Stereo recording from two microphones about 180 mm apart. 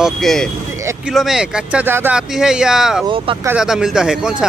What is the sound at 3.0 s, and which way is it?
Speech, 30° right (ahead or behind).